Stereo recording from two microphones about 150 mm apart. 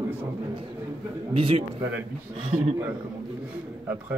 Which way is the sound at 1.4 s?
40° right (ahead or behind).